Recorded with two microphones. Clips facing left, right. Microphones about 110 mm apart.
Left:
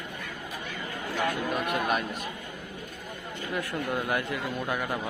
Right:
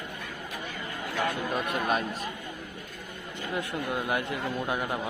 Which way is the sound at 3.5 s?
20° right (ahead or behind).